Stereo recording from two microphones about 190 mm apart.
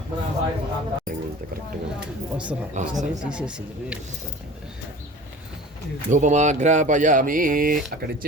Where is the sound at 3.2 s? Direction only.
5° right (ahead or behind).